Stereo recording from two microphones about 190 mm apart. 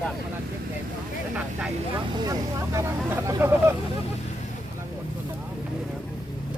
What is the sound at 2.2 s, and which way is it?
Speech, 20° right (ahead or behind).